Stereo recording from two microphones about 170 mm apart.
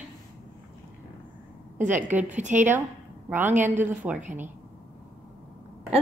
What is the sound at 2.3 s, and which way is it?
Speech, 45° right (ahead or behind).